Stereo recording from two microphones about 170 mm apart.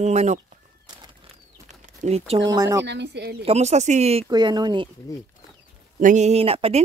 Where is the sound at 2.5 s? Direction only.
15° right (ahead or behind).